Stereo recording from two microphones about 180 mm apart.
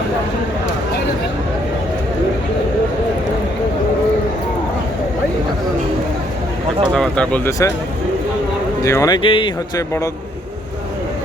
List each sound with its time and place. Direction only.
6.9 s speech: 5° left (ahead or behind)
8.8 s speech: 15° left (ahead or behind)